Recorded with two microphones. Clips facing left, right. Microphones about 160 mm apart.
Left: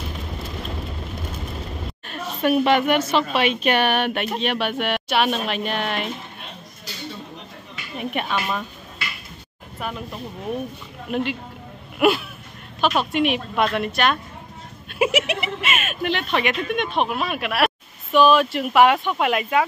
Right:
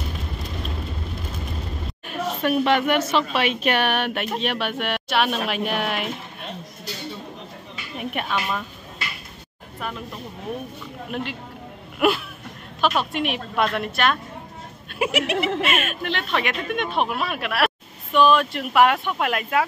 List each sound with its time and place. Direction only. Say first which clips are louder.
2.4 s speech: left 3 dB; 5° left (ahead or behind)
8.0 s speech: left 1 dB; centre (ahead or behind)
9.8 s speech: left 1 dB; 5° left (ahead or behind)
11.1 s speech: left 6 dB; centre (ahead or behind)